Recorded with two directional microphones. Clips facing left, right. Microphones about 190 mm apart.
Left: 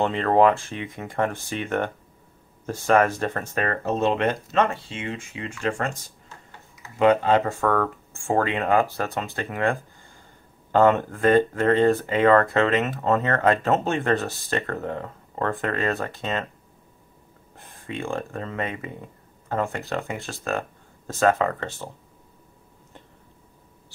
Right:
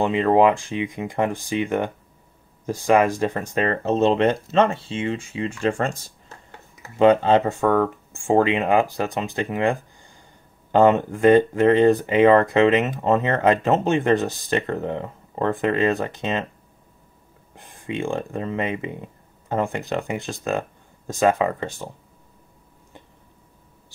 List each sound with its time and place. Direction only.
0.0 s speech: 15° right (ahead or behind); by 5.9 s 30° right (ahead or behind)
7.0 s speech: 25° right (ahead or behind)
17.6 s speech: 20° right (ahead or behind)